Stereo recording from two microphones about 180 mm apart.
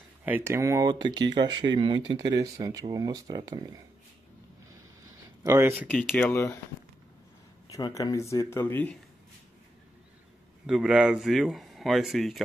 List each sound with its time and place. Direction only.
0.2 s speech: 10° right (ahead or behind)
5.4 s speech: 15° right (ahead or behind)
5.9 s speech: 10° left (ahead or behind)
7.7 s speech: 20° left (ahead or behind)
10.7 s speech: 5° right (ahead or behind)